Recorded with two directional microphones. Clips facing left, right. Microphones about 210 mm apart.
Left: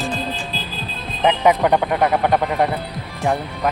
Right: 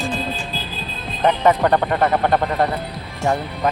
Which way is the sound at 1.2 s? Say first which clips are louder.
Even; 10° left (ahead or behind).